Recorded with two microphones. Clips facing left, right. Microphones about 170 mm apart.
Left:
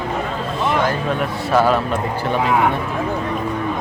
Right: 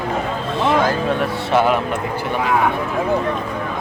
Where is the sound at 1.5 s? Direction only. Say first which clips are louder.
Left 1 dB; 20° right (ahead or behind).